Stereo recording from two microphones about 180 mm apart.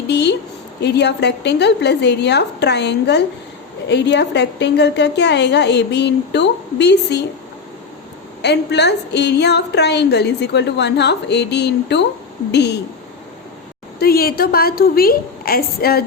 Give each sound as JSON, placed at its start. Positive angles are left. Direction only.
{"t": 0.1, "sound": "a woman's voice", "side_deg": 70}
{"t": 8.4, "sound": "a woman's voice", "side_deg": 70}
{"t": 14.0, "sound": "a woman's voice", "side_deg": 60}